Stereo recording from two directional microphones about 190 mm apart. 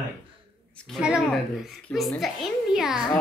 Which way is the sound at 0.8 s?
5° right (ahead or behind).